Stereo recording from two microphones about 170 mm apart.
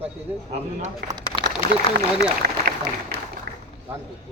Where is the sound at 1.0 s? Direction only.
75° right (ahead or behind).